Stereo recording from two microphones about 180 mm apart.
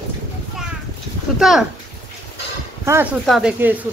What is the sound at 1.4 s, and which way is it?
Speech, centre (ahead or behind).